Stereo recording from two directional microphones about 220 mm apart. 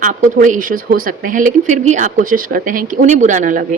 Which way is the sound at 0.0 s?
35° right (ahead or behind).